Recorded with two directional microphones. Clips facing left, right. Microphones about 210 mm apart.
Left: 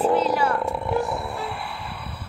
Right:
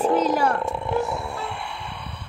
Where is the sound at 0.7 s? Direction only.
5° left (ahead or behind).